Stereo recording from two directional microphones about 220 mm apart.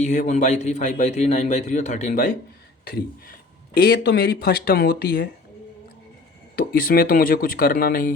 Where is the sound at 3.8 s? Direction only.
50° left (ahead or behind).